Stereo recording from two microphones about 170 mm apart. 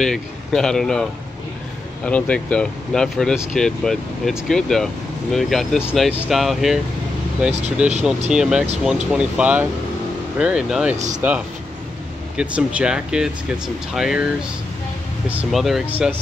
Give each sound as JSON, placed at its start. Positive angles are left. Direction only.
{"t": 0.0, "sound": "speech", "side_deg": 5}
{"t": 2.0, "sound": "speech", "side_deg": 10}
{"t": 11.0, "sound": "speech", "side_deg": -45}
{"t": 12.4, "sound": "speech", "side_deg": -5}